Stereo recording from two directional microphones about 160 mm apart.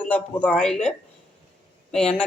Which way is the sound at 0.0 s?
10° left (ahead or behind).